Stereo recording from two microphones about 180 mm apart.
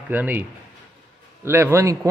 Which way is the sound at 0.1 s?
10° right (ahead or behind).